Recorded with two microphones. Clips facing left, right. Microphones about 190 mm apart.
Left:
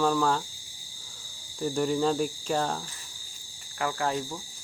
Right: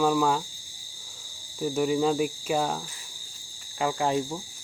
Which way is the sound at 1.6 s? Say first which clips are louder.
Right 2 dB; 5° right (ahead or behind).